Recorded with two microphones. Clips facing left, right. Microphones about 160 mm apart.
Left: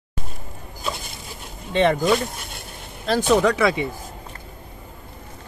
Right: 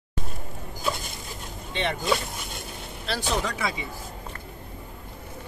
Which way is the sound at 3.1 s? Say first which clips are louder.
Left 11 dB; 55° left (ahead or behind).